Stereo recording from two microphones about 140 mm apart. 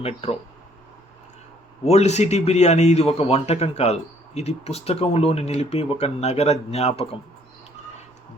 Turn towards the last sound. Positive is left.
turn(degrees=45)  # may be behind; listen again after turning